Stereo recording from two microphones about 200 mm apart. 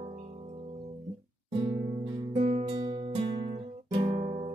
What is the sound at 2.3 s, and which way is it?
Guitar, 35° right (ahead or behind).